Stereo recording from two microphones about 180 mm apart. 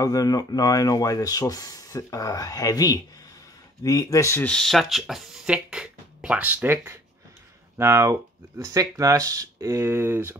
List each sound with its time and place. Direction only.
0.0 s speech: 20° left (ahead or behind); by 10.3 s 15° right (ahead or behind)